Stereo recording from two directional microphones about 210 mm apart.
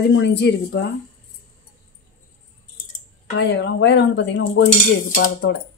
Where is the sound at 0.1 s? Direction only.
55° left (ahead or behind).